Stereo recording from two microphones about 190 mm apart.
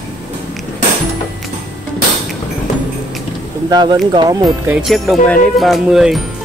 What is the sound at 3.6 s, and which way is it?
Speech, 20° right (ahead or behind).